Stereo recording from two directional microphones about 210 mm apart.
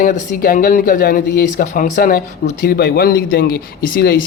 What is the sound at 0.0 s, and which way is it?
Speech, 40° left (ahead or behind).